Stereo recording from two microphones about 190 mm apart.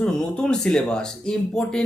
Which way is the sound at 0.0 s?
5° left (ahead or behind).